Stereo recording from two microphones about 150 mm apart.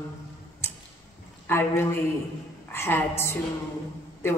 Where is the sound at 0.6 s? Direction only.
15° left (ahead or behind).